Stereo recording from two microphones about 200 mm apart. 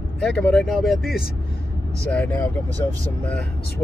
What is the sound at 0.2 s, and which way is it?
Speech, centre (ahead or behind).